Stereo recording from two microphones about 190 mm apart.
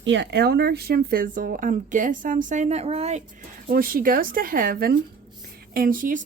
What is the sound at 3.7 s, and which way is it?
Speech, 50° right (ahead or behind).